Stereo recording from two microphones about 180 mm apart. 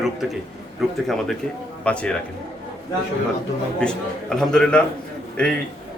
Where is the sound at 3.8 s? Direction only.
5° left (ahead or behind).